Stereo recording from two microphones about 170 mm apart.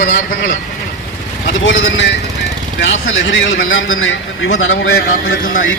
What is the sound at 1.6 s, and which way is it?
A man's voice, 90° left.